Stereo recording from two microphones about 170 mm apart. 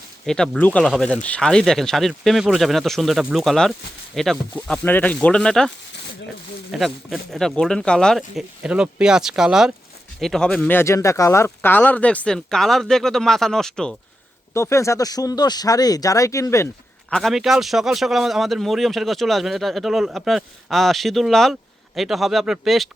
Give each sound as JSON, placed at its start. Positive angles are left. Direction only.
{"t": 0.3, "sound": "a man's voice", "side_deg": 5}
{"t": 14.5, "sound": "speech", "side_deg": 15}
{"t": 17.1, "sound": "a man's voice", "side_deg": 0}